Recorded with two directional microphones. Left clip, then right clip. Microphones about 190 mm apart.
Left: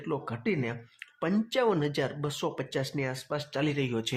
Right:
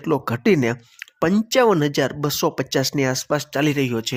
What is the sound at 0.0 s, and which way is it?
Speech, 40° right (ahead or behind).